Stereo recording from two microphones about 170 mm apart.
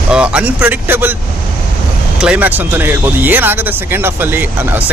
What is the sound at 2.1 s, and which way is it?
Speech, 5° right (ahead or behind).